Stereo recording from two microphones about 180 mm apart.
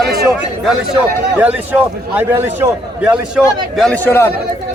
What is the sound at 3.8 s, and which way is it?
Speech, 10° left (ahead or behind).